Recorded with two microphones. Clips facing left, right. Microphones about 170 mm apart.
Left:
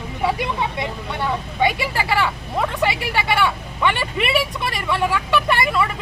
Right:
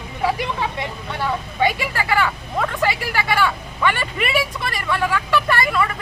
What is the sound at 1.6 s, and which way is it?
Speech, 20° left (ahead or behind).